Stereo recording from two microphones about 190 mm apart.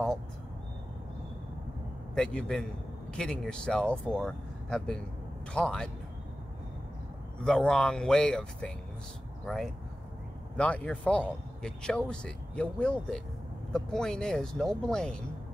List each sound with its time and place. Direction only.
2.1 s a man's voice: 5° left (ahead or behind)
7.4 s speech: 5° left (ahead or behind)
10.6 s speech: 5° left (ahead or behind)